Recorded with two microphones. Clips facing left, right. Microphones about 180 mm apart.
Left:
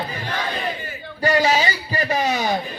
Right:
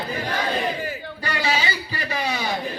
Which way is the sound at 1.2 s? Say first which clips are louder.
Left 7 dB; 45° left (ahead or behind).